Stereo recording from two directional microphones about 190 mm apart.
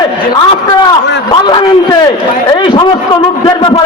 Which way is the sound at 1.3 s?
25° left (ahead or behind).